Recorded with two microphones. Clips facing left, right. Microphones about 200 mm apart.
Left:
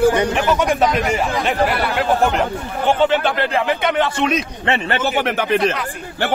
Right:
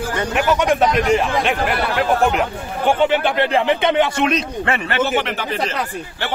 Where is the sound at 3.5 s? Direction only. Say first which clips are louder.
Right 2 dB; 25° right (ahead or behind).